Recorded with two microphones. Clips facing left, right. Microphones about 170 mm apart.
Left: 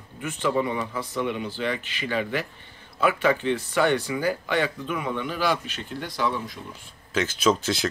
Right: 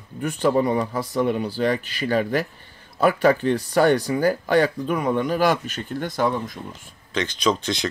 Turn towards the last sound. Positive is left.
turn(degrees=5)  # may be behind; listen again after turning